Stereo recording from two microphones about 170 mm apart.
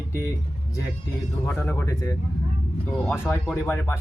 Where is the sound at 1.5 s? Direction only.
10° left (ahead or behind).